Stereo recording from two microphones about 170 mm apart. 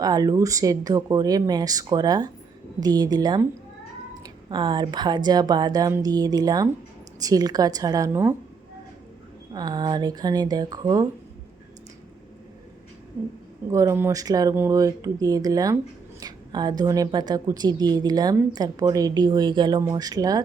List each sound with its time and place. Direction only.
0.0 s a woman's voice: 20° right (ahead or behind)
4.4 s a woman's voice: 25° right (ahead or behind)
9.5 s a woman's voice: 25° right (ahead or behind)
13.7 s a woman's voice: 15° right (ahead or behind)